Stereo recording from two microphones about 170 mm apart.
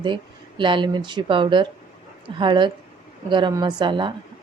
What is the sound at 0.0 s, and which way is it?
A woman's voice, 30° right (ahead or behind).